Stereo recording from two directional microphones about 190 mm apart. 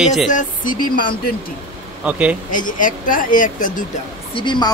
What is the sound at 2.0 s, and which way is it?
Speech, 5° right (ahead or behind).